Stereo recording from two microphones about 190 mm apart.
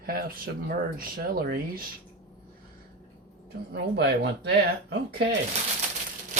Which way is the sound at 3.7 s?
60° right (ahead or behind).